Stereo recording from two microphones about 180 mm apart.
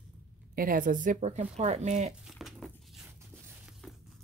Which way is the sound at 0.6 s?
50° right (ahead or behind).